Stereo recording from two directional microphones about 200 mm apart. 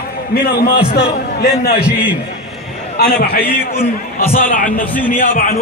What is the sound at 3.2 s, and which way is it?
A man's voice, 50° left (ahead or behind).